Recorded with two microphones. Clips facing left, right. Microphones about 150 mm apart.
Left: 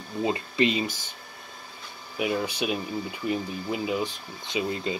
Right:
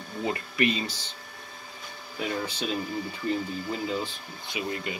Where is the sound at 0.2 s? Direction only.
20° left (ahead or behind).